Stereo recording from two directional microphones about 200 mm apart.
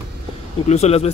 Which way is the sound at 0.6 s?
30° left (ahead or behind).